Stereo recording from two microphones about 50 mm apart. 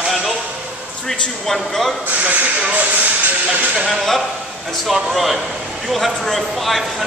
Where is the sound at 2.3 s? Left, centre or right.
Right.